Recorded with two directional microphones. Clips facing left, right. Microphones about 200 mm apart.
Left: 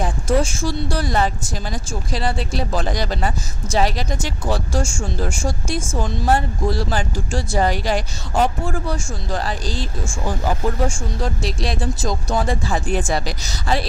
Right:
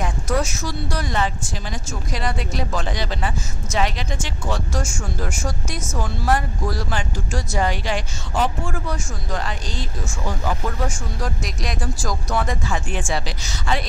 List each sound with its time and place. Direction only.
0.0 s a woman's voice: 30° left (ahead or behind)